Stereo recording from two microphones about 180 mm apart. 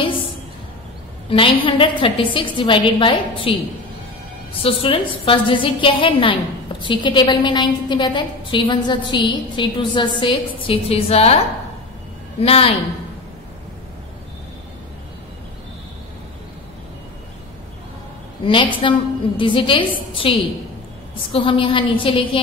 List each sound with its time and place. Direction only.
1.3 s a woman's voice: 30° left (ahead or behind)
4.6 s a woman's voice: 30° left (ahead or behind)
12.4 s a woman's voice: 35° left (ahead or behind)
18.4 s a woman's voice: 30° left (ahead or behind)